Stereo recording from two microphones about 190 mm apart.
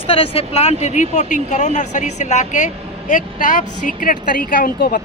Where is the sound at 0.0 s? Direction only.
30° left (ahead or behind).